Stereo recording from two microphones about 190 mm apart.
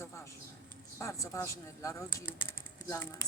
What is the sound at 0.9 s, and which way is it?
Speech, 15° left (ahead or behind).